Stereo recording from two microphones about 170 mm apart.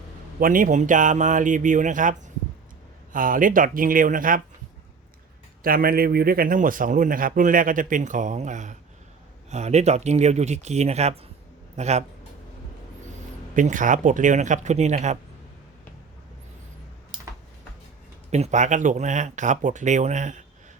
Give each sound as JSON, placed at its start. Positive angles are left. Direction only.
{"t": 0.3, "sound": "speech", "side_deg": -55}
{"t": 5.6, "sound": "speech", "side_deg": -60}
{"t": 13.6, "sound": "speech", "side_deg": -50}
{"t": 18.3, "sound": "speech", "side_deg": -40}